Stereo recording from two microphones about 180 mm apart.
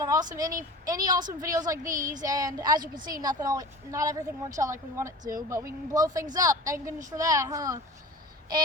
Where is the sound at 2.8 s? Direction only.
50° right (ahead or behind).